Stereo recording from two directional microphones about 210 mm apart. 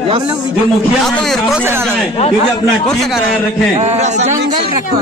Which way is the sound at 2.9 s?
Centre (ahead or behind).